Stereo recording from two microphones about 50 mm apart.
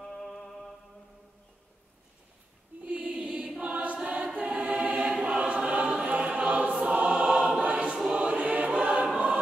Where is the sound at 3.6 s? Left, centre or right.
Right.